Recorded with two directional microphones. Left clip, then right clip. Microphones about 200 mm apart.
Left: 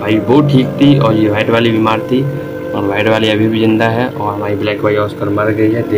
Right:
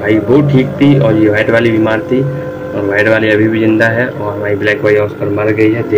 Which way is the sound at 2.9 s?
15° left (ahead or behind).